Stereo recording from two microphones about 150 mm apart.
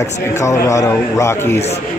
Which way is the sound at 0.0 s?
20° left (ahead or behind).